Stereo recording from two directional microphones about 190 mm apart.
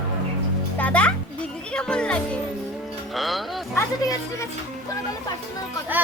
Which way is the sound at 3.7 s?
15° left (ahead or behind).